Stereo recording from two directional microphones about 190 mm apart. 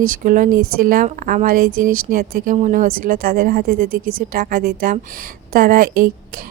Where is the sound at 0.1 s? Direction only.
45° right (ahead or behind).